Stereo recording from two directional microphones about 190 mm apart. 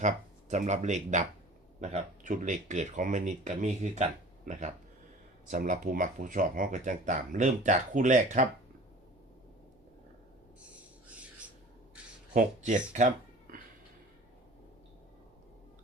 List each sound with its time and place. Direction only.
0.0 s speech: 40° right (ahead or behind)
11.1 s squawk: 5° right (ahead or behind)
12.3 s speech: 45° right (ahead or behind)